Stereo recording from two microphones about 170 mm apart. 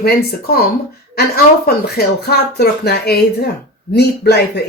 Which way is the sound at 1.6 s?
65° left (ahead or behind).